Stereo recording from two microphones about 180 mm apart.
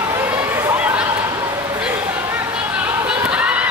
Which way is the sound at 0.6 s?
10° right (ahead or behind).